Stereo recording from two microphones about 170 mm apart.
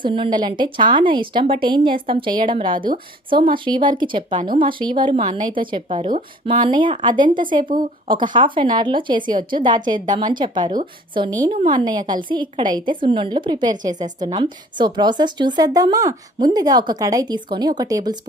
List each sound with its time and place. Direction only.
0.0 s a woman's voice: 30° right (ahead or behind)
6.1 s speech: 45° right (ahead or behind)
6.7 s a woman's voice: 30° right (ahead or behind)
7.6 s speech: 55° right (ahead or behind)
8.0 s a woman's voice: 30° right (ahead or behind)